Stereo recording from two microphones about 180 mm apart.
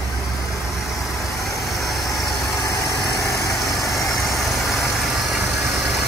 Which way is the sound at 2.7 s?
20° left (ahead or behind).